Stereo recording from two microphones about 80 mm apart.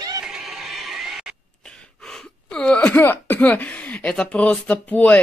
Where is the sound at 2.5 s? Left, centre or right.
Centre.